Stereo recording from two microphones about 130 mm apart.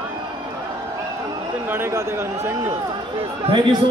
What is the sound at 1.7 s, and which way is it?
A man's voice, 20° right (ahead or behind).